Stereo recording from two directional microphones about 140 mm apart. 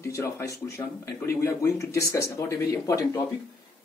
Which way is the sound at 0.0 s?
20° left (ahead or behind).